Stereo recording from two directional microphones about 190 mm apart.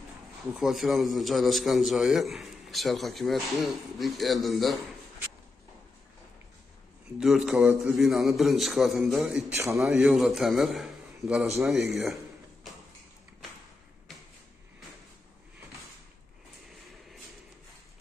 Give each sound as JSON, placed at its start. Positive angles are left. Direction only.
{"t": 0.6, "sound": "a man's voice", "side_deg": 0}
{"t": 7.2, "sound": "a man's voice", "side_deg": 0}
{"t": 9.6, "sound": "a man's voice", "side_deg": -15}
{"t": 9.8, "sound": "a man's voice", "side_deg": -5}